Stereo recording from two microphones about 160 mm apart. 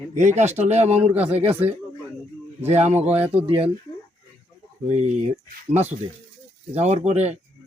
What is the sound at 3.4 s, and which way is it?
Speech, 40° right (ahead or behind).